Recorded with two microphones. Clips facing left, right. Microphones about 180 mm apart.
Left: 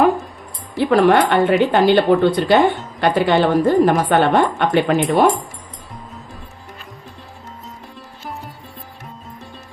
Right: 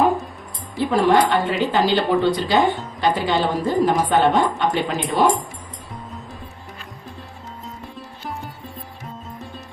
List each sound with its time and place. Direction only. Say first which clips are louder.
0.8 s a woman's voice: left 3 dB; 70° left (ahead or behind)